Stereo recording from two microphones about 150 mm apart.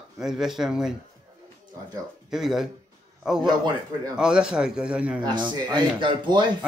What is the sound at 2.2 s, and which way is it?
Speech, centre (ahead or behind).